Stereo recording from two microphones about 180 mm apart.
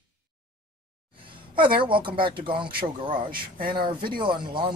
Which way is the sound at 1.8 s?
30° right (ahead or behind).